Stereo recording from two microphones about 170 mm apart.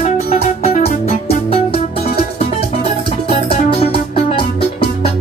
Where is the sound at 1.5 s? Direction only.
35° left (ahead or behind).